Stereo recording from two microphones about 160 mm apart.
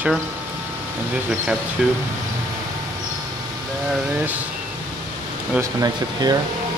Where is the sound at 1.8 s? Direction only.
5° right (ahead or behind).